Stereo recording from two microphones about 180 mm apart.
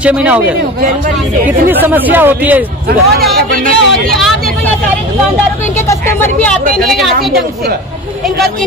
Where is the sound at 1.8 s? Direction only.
10° right (ahead or behind).